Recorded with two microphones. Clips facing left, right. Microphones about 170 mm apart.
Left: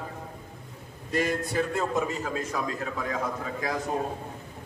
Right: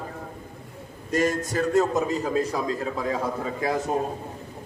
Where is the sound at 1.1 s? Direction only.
45° right (ahead or behind).